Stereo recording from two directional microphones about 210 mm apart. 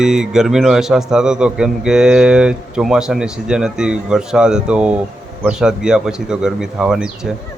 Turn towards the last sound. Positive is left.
turn(degrees=-5)  # may be behind; listen again after turning